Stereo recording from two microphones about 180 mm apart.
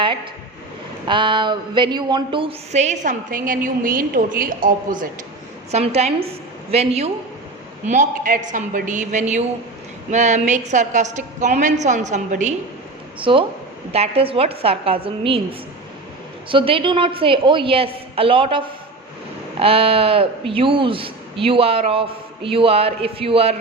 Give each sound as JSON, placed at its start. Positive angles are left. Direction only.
{"t": 1.0, "sound": "speech", "side_deg": -25}
{"t": 5.7, "sound": "speech", "side_deg": -35}
{"t": 7.9, "sound": "a woman's voice", "side_deg": -45}
{"t": 13.1, "sound": "a woman's voice", "side_deg": -30}
{"t": 16.5, "sound": "a woman's voice", "side_deg": -30}